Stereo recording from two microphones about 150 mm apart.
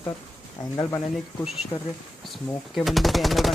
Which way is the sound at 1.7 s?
45° left (ahead or behind).